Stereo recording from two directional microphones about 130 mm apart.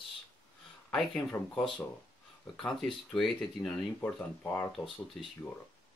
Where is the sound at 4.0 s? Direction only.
15° left (ahead or behind).